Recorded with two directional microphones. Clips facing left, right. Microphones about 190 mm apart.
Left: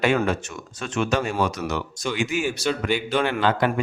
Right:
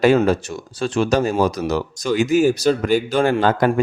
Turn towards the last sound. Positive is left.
turn(degrees=-40)  # may be behind; listen again after turning